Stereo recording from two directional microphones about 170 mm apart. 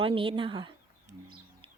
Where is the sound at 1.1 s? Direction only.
40° right (ahead or behind).